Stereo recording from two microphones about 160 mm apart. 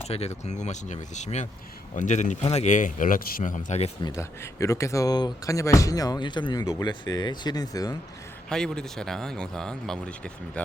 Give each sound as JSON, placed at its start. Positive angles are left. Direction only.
{"t": 0.0, "sound": "speech", "side_deg": 40}
{"t": 4.0, "sound": "speech", "side_deg": 20}
{"t": 8.4, "sound": "speech", "side_deg": 5}